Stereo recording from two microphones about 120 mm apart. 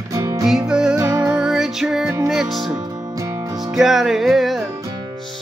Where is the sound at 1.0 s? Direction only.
30° right (ahead or behind).